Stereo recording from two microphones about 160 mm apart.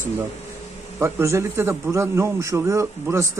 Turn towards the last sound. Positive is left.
turn(degrees=-20)  # may be behind; listen again after turning